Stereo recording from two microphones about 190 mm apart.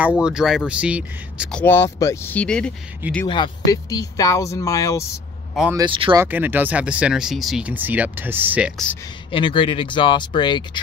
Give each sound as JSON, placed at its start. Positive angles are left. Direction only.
{"t": 0.2, "sound": "speech", "side_deg": -5}
{"t": 1.5, "sound": "speech", "side_deg": 10}
{"t": 3.3, "sound": "speech", "side_deg": 25}
{"t": 5.9, "sound": "speech", "side_deg": -25}
{"t": 6.1, "sound": "speech", "side_deg": -10}
{"t": 9.3, "sound": "speech", "side_deg": 25}